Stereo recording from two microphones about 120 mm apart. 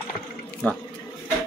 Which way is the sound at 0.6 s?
10° left (ahead or behind).